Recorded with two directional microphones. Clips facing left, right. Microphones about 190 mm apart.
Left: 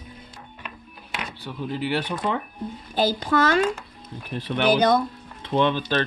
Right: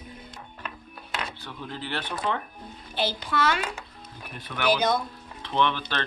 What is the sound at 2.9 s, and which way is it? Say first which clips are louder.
Speech: left 6 dB; 45° left (ahead or behind).